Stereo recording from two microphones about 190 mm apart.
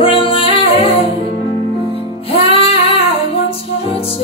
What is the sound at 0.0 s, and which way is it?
Music, 30° left (ahead or behind).